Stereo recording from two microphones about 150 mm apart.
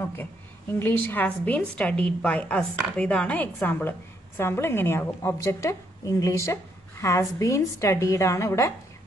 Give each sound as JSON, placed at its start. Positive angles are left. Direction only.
{"t": 0.7, "sound": "a woman's voice", "side_deg": 15}